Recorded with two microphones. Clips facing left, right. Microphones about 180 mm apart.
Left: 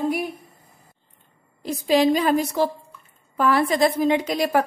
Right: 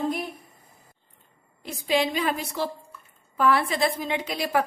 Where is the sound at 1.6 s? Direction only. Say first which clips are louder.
Left 7 dB; 40° left (ahead or behind).